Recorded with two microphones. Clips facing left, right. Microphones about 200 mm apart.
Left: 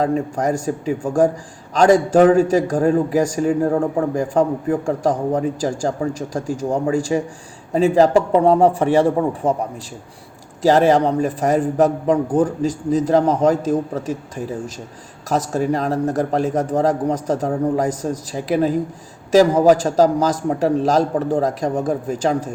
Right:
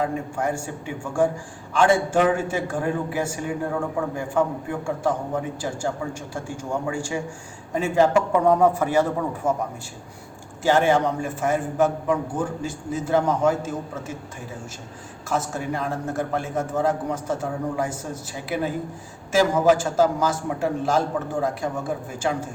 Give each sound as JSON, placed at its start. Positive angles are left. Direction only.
{"t": 0.0, "sound": "a man's voice", "side_deg": 40}
{"t": 10.6, "sound": "a man's voice", "side_deg": 35}
{"t": 15.3, "sound": "a man's voice", "side_deg": 40}